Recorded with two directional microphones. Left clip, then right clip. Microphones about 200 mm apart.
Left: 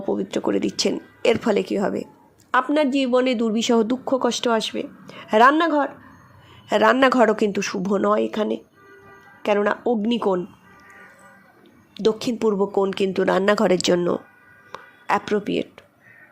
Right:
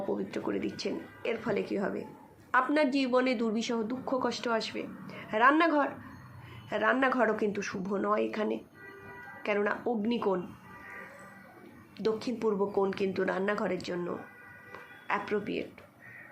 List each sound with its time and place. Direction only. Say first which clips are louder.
0.1 s speech: left 14 dB; 50° left (ahead or behind)
6.7 s speech: left 11 dB; 55° left (ahead or behind)
11.9 s speech: left 10 dB; 50° left (ahead or behind)
14.7 s a sound: left 11 dB; 55° left (ahead or behind)